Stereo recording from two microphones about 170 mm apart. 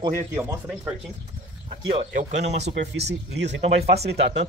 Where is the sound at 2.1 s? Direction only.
45° right (ahead or behind).